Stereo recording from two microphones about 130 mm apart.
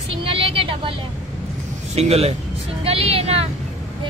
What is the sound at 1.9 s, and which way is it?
Speech, 55° right (ahead or behind).